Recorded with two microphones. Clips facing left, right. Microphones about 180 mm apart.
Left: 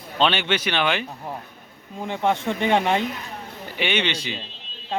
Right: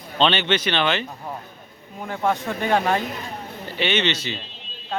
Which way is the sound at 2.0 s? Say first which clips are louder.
Left 1 dB; 25° left (ahead or behind).